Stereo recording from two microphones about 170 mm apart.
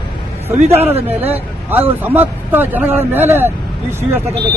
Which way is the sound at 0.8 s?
35° right (ahead or behind).